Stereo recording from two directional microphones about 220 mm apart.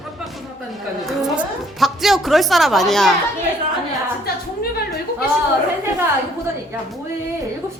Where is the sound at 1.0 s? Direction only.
Centre (ahead or behind).